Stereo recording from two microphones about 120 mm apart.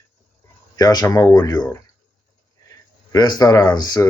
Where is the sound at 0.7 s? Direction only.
30° left (ahead or behind).